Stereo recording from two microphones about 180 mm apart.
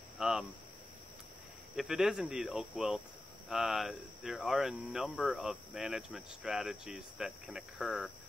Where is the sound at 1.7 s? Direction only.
5° right (ahead or behind).